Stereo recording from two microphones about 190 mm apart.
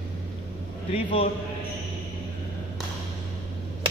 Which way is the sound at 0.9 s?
30° left (ahead or behind).